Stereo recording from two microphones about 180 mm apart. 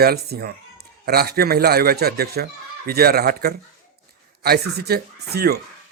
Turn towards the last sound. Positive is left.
turn(degrees=-60)  # may be behind; listen again after turning